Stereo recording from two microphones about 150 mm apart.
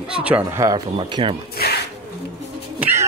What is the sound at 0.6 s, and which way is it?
Speech, 30° right (ahead or behind).